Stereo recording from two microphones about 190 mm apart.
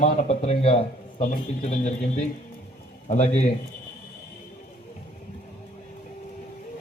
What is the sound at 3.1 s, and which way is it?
Speech, 35° left (ahead or behind).